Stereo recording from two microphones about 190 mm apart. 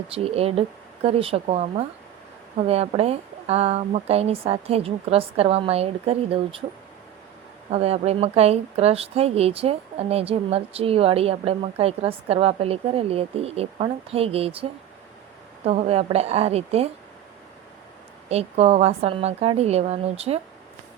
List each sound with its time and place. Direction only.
0.1 s speech: 30° right (ahead or behind)
7.7 s speech: 35° right (ahead or behind)
18.3 s speech: 35° right (ahead or behind)